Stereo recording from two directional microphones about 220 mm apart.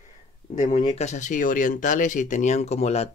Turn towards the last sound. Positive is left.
turn(degrees=30)  # may be behind; listen again after turning